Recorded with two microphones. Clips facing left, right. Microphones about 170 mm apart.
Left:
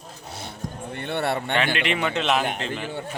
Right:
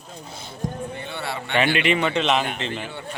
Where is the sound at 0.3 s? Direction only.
70° left (ahead or behind).